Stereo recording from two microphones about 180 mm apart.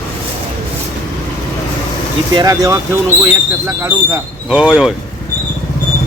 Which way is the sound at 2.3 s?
20° right (ahead or behind).